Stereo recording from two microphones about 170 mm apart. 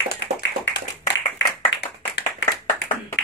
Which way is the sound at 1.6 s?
75° left (ahead or behind).